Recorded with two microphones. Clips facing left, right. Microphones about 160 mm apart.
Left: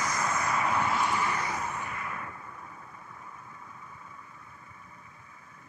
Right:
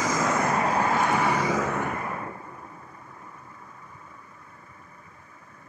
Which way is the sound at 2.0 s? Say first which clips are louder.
Right 6 dB; 40° right (ahead or behind).